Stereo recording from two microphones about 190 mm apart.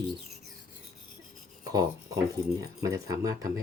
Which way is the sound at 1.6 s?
20° right (ahead or behind).